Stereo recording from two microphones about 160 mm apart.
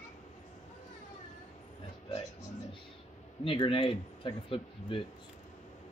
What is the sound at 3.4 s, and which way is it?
Speech, 30° left (ahead or behind).